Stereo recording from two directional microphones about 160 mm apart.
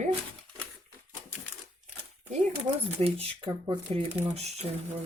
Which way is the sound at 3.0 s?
40° right (ahead or behind).